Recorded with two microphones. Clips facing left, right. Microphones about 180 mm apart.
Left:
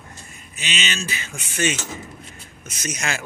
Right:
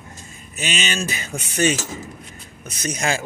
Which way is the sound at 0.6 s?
40° right (ahead or behind).